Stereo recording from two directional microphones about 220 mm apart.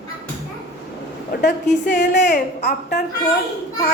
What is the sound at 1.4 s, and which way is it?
A woman's voice, 50° left (ahead or behind).